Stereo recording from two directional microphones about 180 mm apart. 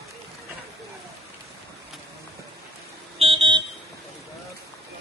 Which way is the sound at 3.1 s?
30° right (ahead or behind).